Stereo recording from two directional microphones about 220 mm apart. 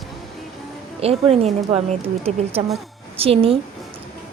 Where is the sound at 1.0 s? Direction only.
25° right (ahead or behind).